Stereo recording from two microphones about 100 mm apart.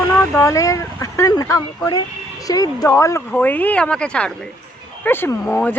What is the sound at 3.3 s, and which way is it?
Speech, 15° left (ahead or behind).